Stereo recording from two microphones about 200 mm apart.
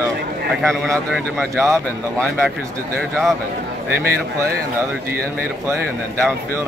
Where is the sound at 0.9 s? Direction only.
Centre (ahead or behind).